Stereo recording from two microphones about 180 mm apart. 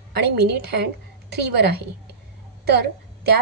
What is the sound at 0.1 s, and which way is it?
Speech, 65° right (ahead or behind).